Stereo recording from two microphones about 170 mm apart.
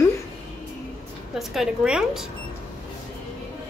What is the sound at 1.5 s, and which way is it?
Speech, centre (ahead or behind).